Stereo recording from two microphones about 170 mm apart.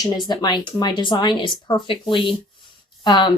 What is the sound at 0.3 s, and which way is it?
Speech, 25° left (ahead or behind).